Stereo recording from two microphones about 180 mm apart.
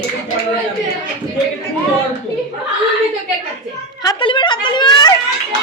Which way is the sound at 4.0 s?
25° left (ahead or behind).